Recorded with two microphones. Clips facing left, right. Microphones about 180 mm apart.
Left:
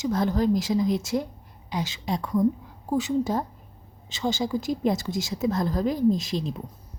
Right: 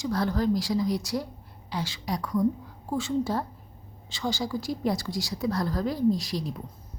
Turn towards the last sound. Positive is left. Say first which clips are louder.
# left 2 dB
turn(degrees=20)  # may be behind; listen again after turning